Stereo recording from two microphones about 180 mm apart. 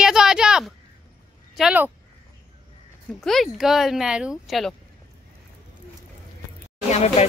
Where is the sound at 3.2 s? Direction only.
Centre (ahead or behind).